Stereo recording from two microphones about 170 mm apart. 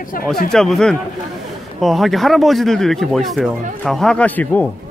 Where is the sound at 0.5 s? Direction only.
5° left (ahead or behind).